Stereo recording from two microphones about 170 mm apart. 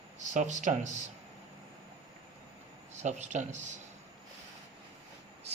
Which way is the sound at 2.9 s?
45° right (ahead or behind).